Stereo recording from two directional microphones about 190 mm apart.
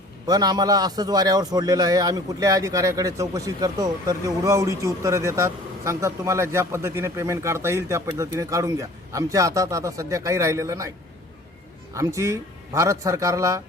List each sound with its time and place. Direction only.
0.3 s a man's voice: 20° right (ahead or behind)
11.9 s a man's voice: 15° right (ahead or behind)